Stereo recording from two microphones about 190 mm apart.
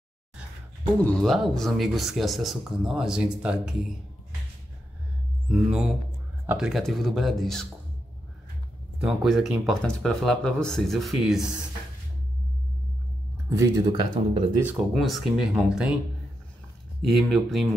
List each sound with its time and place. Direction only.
0.9 s speech: 5° left (ahead or behind)
5.5 s speech: 5° right (ahead or behind)
9.0 s speech: centre (ahead or behind)
13.5 s speech: 15° right (ahead or behind)
14.6 s speech: 5° right (ahead or behind)
17.1 s speech: centre (ahead or behind)